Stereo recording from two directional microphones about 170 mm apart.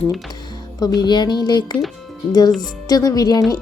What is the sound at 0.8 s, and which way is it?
Speech, 25° left (ahead or behind).